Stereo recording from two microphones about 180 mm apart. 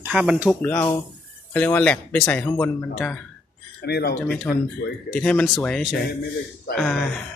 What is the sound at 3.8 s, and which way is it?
Speech, 65° left (ahead or behind).